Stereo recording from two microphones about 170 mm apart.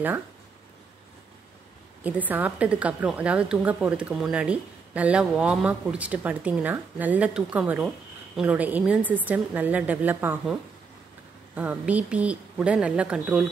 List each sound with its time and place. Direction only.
2.0 s a woman's voice: 10° right (ahead or behind)
11.5 s a woman's voice: 10° right (ahead or behind)